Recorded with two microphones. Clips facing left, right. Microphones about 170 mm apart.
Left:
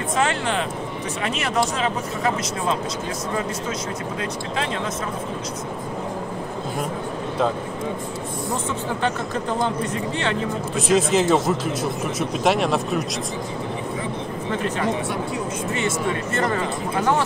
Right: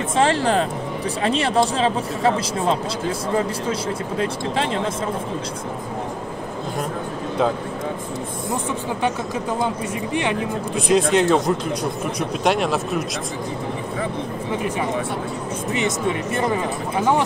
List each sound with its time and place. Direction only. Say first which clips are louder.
0.1 s speech: right 5 dB; 30° right (ahead or behind)
10.8 s speech: right 2 dB; centre (ahead or behind)
14.5 s speech: even; 15° right (ahead or behind)